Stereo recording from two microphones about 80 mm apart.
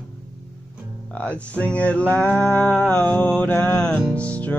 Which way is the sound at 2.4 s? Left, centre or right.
Left.